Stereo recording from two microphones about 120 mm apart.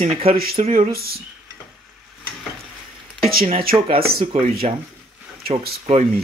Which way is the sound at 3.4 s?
50° right (ahead or behind).